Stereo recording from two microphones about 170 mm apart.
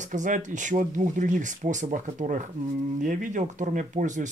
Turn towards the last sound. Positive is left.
turn(degrees=-45)  # may be behind; listen again after turning